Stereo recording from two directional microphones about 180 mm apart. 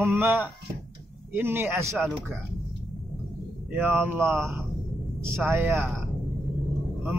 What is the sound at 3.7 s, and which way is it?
Speech, 10° right (ahead or behind).